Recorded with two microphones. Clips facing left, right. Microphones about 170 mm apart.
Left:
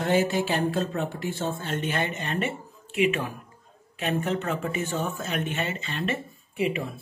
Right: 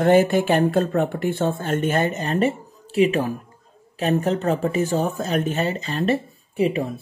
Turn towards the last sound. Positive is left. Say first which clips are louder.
# right 6 dB
turn(degrees=-35)  # may be behind; listen again after turning